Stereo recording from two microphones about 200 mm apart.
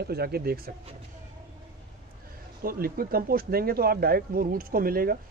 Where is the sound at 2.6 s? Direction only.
50° right (ahead or behind).